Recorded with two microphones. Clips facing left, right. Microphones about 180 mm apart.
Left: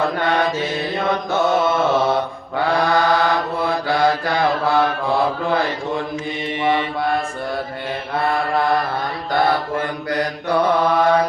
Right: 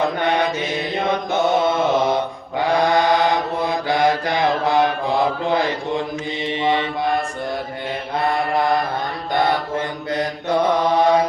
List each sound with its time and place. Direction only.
0.0 s mantra: 20° right (ahead or behind)
8.1 s mantra: 20° right (ahead or behind)